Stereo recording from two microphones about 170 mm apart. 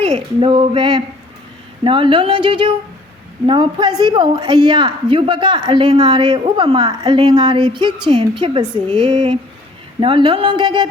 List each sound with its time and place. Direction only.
0.1 s a woman's voice: 30° right (ahead or behind)